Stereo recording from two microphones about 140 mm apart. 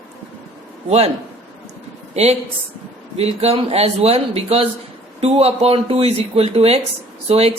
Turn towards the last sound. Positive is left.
turn(degrees=-45)  # may be behind; listen again after turning